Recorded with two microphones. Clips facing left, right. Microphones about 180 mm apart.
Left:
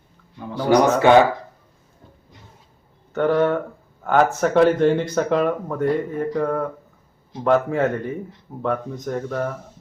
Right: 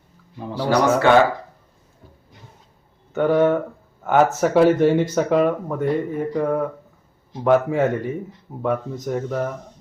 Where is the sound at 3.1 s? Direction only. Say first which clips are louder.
Right 1 dB; 5° right (ahead or behind).